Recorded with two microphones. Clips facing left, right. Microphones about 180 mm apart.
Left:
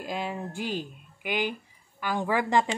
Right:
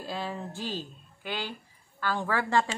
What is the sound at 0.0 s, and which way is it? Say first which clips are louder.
Speech: left 2 dB; 15° left (ahead or behind).